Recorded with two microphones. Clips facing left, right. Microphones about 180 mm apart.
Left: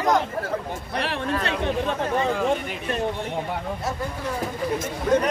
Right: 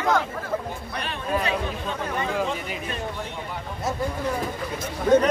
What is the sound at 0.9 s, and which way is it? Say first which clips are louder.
Speech: left 6 dB; 80° left.